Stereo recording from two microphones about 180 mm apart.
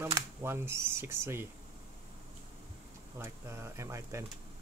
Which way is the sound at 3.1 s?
15° right (ahead or behind).